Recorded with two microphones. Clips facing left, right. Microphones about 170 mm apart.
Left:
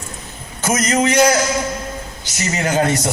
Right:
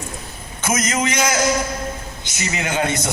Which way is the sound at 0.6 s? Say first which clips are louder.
Left 4 dB; 35° left (ahead or behind).